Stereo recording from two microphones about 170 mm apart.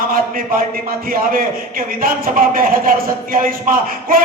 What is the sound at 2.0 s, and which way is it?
A man's voice, 55° right (ahead or behind).